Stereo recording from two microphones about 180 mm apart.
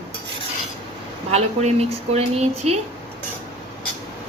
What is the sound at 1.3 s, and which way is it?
A woman's voice, 35° right (ahead or behind).